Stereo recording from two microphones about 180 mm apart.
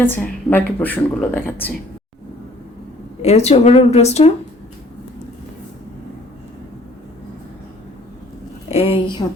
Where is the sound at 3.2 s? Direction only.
35° left (ahead or behind).